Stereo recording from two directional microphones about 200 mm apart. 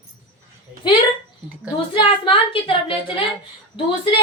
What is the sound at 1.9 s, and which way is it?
A woman's voice, 25° left (ahead or behind).